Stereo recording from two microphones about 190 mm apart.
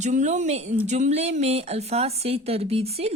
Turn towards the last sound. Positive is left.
turn(degrees=-35)  # may be behind; listen again after turning